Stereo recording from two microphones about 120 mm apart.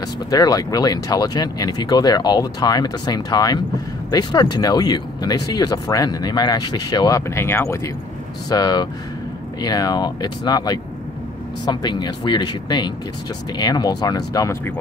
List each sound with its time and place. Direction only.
0.3 s speech: 30° left (ahead or behind)
8.5 s speech: 35° left (ahead or behind)